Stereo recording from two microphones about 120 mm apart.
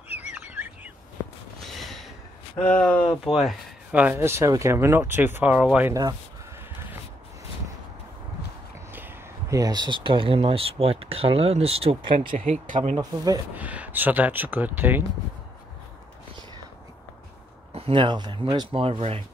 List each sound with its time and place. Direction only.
0.1 s bird: 15° right (ahead or behind)
1.6 s a sound: centre (ahead or behind)
2.6 s speech: 10° left (ahead or behind)
3.3 s speech: centre (ahead or behind)
3.9 s speech: 15° right (ahead or behind)
9.5 s speech: 30° right (ahead or behind)
12.6 s speech: 90° right
13.6 s speech: 10° right (ahead or behind)
17.7 s speech: 45° right (ahead or behind)